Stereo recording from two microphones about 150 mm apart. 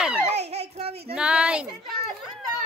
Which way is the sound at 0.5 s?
45° right (ahead or behind).